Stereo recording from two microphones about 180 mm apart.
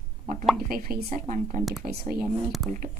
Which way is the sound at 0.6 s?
55° right (ahead or behind).